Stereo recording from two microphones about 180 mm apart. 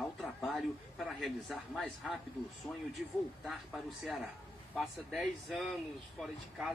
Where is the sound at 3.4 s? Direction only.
Centre (ahead or behind).